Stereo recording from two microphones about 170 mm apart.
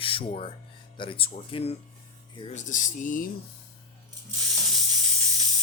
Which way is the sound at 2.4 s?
40° left (ahead or behind).